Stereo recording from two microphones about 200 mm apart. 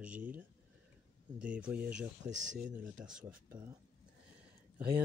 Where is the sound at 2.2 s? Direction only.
65° right (ahead or behind).